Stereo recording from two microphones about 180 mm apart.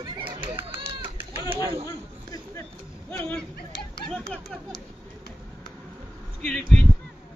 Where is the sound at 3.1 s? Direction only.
10° left (ahead or behind).